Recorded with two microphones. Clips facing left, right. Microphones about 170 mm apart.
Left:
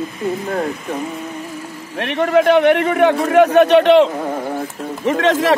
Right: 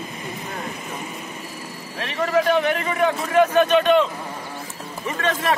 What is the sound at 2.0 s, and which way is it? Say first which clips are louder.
A man's voice: left 6 dB; 65° left (ahead or behind).